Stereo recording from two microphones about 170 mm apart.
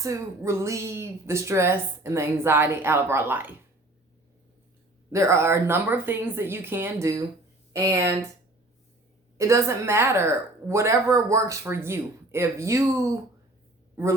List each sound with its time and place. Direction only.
0.0 s speech: 15° right (ahead or behind)
5.1 s speech: 15° right (ahead or behind)
9.4 s a man's voice: 15° right (ahead or behind)